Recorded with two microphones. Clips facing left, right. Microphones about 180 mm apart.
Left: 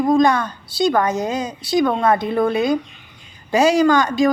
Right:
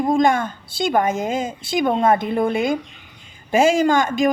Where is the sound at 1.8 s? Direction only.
25° right (ahead or behind).